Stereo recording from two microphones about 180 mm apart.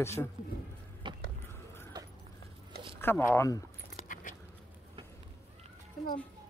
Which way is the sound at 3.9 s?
45° left (ahead or behind).